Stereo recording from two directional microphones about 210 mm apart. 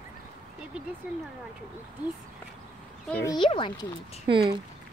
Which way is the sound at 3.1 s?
15° left (ahead or behind).